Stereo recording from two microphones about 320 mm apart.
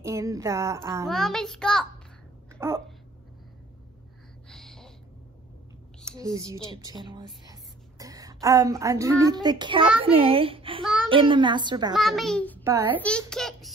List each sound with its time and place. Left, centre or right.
0.0 s a child's voice: centre
2.6 s a sound: centre
4.5 s a sound: centre
6.0 s a woman's voice: centre
11.9 s a child's voice: centre
12.6 s a child's voice: centre
13.3 s a child's voice: centre